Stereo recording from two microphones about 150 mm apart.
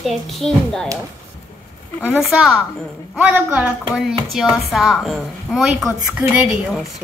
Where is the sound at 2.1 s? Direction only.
5° right (ahead or behind).